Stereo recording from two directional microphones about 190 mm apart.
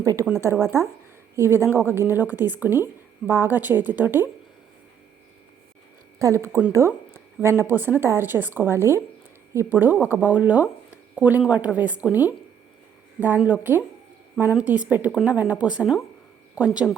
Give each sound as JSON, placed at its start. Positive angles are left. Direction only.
{"t": 0.0, "sound": "a woman's voice", "side_deg": -20}
{"t": 6.1, "sound": "a woman's voice", "side_deg": -15}